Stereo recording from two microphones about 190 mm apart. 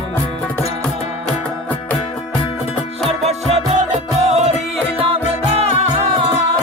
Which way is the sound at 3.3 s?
35° right (ahead or behind).